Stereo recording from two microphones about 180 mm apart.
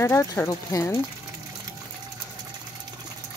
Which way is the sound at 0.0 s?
15° left (ahead or behind).